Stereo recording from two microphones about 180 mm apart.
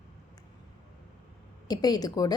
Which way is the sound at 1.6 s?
20° left (ahead or behind).